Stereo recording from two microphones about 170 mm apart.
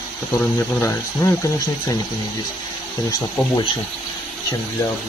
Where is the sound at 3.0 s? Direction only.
25° left (ahead or behind).